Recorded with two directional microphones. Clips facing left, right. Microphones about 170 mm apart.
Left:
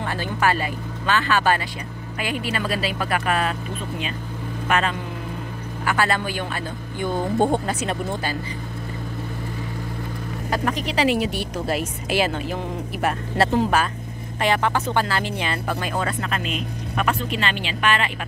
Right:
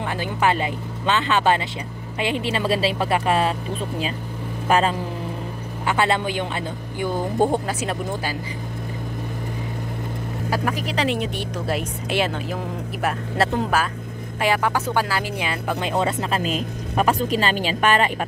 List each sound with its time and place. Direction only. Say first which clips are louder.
0.0 s speech: right 1 dB; 15° right (ahead or behind)
4.6 s speech: right 4 dB; 30° right (ahead or behind)
7.0 s a woman's voice: even; 5° right (ahead or behind)
10.5 s a woman's voice: left 1 dB; 5° right (ahead or behind)
11.0 s a woman's voice: left 5 dB; 5° left (ahead or behind); by 15.8 s 10° right (ahead or behind)
15.8 s speech: right 3 dB; 25° right (ahead or behind); by 18.1 s 40° right (ahead or behind)